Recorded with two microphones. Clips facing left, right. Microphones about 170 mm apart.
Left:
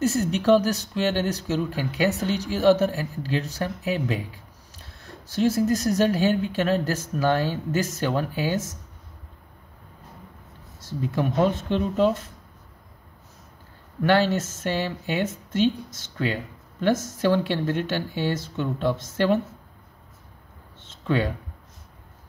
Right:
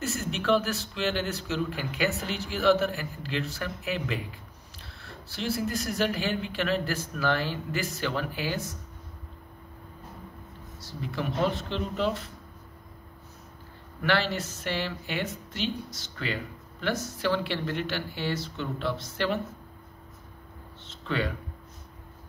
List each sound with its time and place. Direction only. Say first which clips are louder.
0.0 s speech: left 8 dB; 40° left (ahead or behind)
10.9 s speech: left 7 dB; 50° left (ahead or behind)
14.0 s speech: left 7 dB; 45° left (ahead or behind)
20.8 s a sound: left 6 dB; 50° left (ahead or behind)